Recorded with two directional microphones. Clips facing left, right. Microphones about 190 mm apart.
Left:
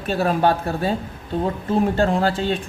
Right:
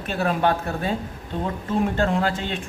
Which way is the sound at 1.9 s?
35° left (ahead or behind).